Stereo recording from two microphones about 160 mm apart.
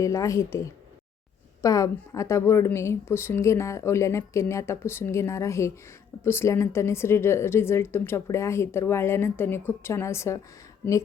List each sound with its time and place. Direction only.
0.0 s a woman's voice: 20° left (ahead or behind)